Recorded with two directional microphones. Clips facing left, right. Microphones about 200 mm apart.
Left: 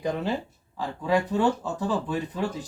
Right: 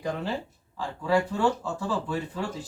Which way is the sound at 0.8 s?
20° left (ahead or behind).